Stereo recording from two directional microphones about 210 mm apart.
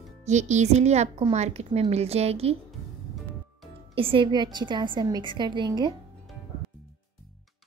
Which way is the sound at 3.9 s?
25° right (ahead or behind).